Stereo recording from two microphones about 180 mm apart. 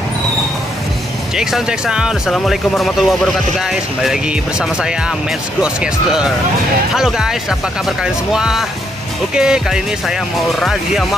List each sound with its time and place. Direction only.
1.3 s speech: 5° right (ahead or behind)